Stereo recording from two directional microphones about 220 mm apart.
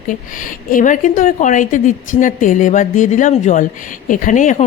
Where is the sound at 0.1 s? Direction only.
40° left (ahead or behind).